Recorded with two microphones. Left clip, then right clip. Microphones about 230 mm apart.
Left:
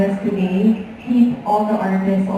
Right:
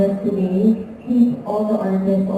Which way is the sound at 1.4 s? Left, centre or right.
Left.